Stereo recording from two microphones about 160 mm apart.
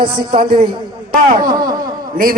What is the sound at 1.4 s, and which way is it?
Speech, 25° right (ahead or behind).